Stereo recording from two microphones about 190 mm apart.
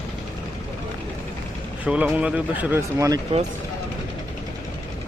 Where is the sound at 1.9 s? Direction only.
5° right (ahead or behind).